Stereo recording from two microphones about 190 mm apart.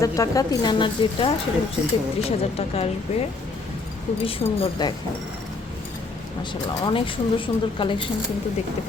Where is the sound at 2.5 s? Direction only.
30° left (ahead or behind).